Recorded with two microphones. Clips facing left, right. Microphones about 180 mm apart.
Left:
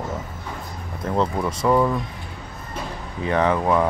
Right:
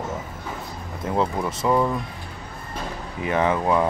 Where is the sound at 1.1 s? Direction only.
5° right (ahead or behind).